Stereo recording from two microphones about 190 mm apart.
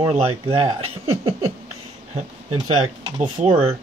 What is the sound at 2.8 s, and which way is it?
Speech, 35° right (ahead or behind).